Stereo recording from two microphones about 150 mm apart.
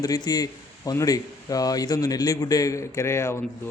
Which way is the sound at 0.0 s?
25° left (ahead or behind).